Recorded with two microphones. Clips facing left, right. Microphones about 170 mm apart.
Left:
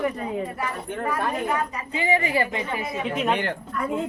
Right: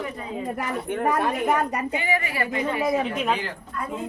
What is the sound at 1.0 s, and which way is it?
Speech, 65° right (ahead or behind).